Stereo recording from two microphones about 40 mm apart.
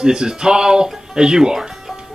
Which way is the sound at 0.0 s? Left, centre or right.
Centre.